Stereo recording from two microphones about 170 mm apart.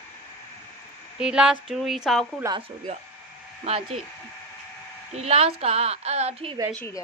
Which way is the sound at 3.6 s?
35° right (ahead or behind).